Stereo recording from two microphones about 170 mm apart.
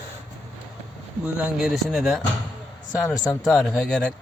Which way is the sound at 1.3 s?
5° right (ahead or behind).